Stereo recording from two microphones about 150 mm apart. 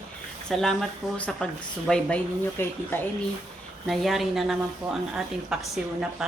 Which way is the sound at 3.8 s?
Centre (ahead or behind).